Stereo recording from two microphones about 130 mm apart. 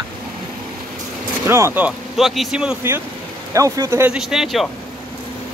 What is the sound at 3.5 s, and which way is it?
Speech, 25° right (ahead or behind).